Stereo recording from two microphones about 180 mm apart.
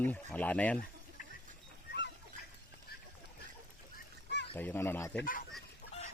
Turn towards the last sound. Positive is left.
turn(degrees=50)  # may be behind; listen again after turning